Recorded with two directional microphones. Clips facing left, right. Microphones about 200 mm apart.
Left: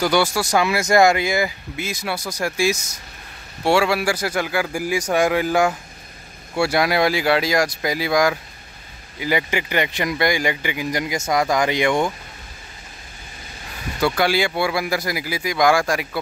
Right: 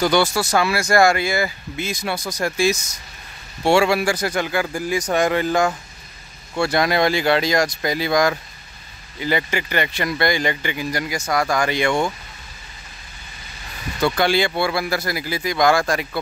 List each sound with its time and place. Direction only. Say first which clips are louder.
0.0 s speech: right 1 dB; 10° left (ahead or behind)
13.9 s speech: right 1 dB; 5° left (ahead or behind)